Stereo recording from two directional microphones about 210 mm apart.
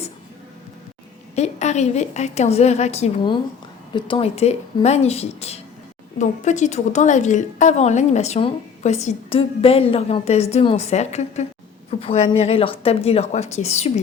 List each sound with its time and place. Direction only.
1.4 s a woman's voice: 35° left (ahead or behind)